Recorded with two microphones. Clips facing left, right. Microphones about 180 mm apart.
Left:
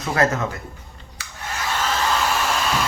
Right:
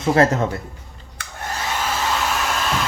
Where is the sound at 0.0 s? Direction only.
30° right (ahead or behind).